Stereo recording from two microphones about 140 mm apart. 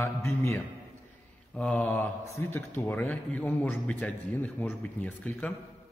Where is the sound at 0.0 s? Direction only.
20° left (ahead or behind).